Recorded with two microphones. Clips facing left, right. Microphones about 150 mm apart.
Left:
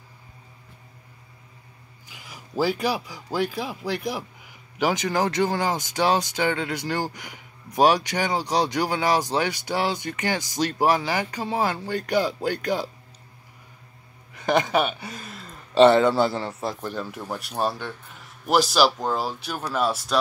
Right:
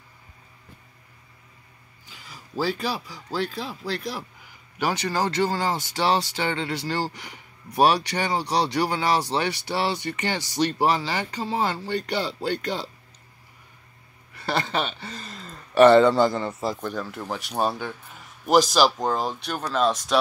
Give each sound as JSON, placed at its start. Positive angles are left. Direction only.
{"t": 2.0, "sound": "speech", "side_deg": 15}
{"t": 14.3, "sound": "speech", "side_deg": 15}
{"t": 17.0, "sound": "speech", "side_deg": 15}
{"t": 17.3, "sound": "speech", "side_deg": 0}